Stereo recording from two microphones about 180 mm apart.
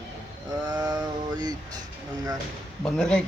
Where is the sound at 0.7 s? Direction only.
20° right (ahead or behind).